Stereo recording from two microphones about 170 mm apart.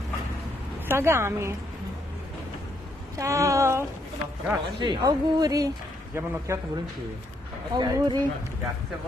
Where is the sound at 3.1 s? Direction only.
20° right (ahead or behind).